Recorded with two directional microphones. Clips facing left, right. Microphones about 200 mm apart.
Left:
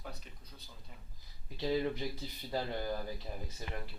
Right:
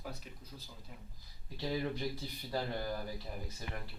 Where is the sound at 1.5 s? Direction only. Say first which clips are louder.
Left 3 dB; 15° left (ahead or behind).